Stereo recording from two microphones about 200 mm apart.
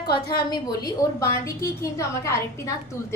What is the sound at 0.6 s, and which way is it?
A woman's voice, 15° left (ahead or behind).